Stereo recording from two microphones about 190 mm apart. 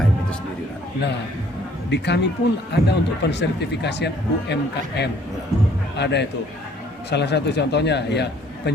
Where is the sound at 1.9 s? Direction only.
65° left (ahead or behind).